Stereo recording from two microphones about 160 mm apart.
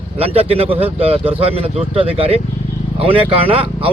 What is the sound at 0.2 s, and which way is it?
A man's voice, 35° right (ahead or behind).